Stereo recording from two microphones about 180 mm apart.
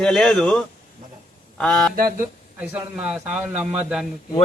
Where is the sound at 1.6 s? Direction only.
5° left (ahead or behind).